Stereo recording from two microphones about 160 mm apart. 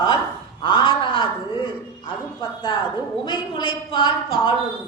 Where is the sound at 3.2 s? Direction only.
30° left (ahead or behind).